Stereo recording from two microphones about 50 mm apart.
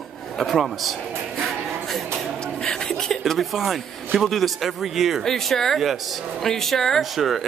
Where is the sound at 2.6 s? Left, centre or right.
Centre.